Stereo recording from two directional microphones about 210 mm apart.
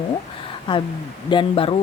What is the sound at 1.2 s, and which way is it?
Speech, 25° left (ahead or behind).